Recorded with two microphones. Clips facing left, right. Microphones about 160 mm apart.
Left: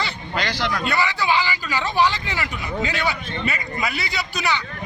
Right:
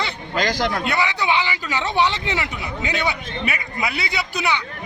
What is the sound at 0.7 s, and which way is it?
Speech, 20° right (ahead or behind).